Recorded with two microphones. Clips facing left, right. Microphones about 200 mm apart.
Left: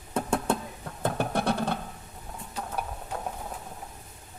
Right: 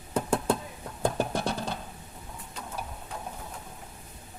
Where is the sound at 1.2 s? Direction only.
60° left (ahead or behind).